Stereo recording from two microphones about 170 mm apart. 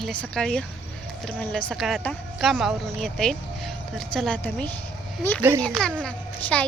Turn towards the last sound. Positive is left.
turn(degrees=10)  # may be behind; listen again after turning